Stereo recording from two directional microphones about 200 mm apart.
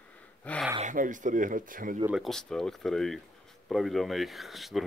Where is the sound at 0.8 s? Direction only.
40° right (ahead or behind).